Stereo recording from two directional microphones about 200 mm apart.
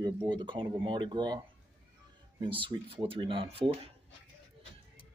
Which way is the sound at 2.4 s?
25° right (ahead or behind).